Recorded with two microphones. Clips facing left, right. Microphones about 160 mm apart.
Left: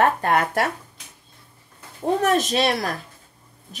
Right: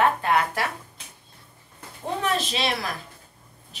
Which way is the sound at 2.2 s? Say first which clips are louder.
Left 5 dB; 50° left (ahead or behind).